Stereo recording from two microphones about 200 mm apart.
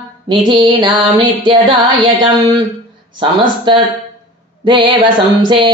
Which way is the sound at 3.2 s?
25° right (ahead or behind).